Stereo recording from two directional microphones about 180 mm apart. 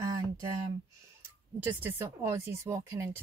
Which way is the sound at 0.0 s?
20° right (ahead or behind).